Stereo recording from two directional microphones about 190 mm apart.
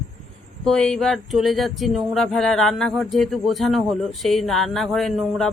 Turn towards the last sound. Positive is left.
turn(degrees=0)  # may be behind; listen again after turning